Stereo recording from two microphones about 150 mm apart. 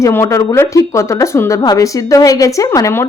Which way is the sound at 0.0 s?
20° left (ahead or behind).